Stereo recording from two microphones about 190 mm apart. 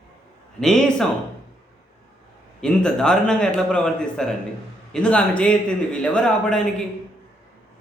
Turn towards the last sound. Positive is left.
turn(degrees=5)  # may be behind; listen again after turning